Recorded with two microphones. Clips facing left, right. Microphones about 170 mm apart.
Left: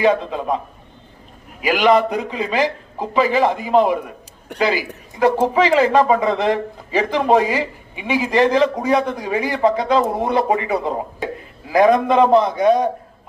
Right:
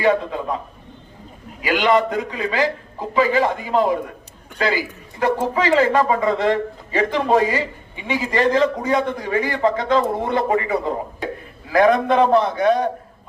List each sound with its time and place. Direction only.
0.0 s a man's voice: 20° left (ahead or behind)
2.0 s a man's voice: 20° left (ahead or behind)